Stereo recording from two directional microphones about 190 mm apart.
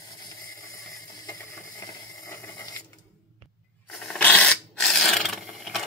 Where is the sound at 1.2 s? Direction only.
15° left (ahead or behind).